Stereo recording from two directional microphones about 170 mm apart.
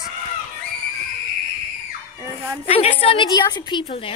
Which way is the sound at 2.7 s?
35° left (ahead or behind).